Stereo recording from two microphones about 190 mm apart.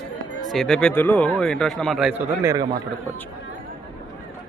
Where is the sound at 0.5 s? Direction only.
Centre (ahead or behind).